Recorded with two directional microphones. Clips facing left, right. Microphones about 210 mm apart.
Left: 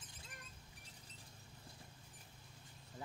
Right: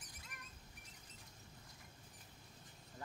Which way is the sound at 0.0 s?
30° left (ahead or behind).